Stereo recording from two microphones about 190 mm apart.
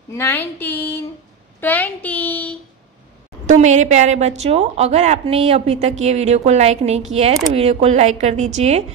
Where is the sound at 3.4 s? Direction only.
40° right (ahead or behind).